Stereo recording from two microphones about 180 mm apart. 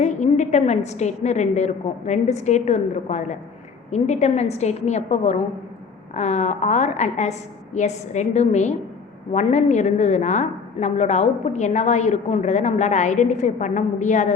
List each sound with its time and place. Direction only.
0.0 s a woman's voice: 40° left (ahead or behind)